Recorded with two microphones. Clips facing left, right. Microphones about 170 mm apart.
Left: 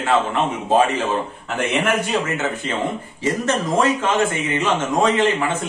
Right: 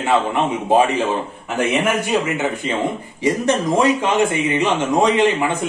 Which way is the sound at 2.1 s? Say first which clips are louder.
Right 3 dB; 15° right (ahead or behind).